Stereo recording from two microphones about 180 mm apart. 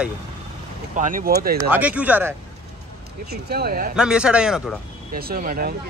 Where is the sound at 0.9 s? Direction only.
45° right (ahead or behind).